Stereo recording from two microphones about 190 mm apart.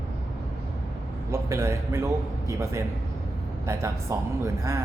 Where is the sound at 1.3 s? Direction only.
15° right (ahead or behind).